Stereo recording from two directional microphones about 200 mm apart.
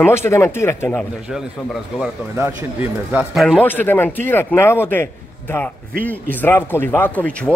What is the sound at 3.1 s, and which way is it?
Speech, 5° right (ahead or behind).